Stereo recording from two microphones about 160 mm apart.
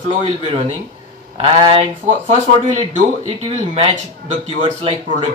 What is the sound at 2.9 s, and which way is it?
Speech, 50° right (ahead or behind).